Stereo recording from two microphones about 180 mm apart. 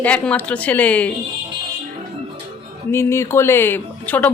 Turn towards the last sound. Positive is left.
turn(degrees=10)  # may be behind; listen again after turning